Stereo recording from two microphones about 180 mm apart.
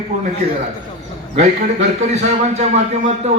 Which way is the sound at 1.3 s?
40° right (ahead or behind).